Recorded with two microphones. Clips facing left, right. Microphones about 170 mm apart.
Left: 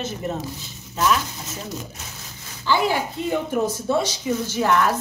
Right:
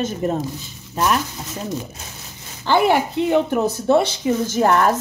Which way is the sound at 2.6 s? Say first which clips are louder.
Right 5 dB; 60° right (ahead or behind).